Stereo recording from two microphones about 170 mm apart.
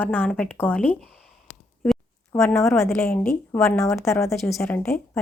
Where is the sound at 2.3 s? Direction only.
15° left (ahead or behind).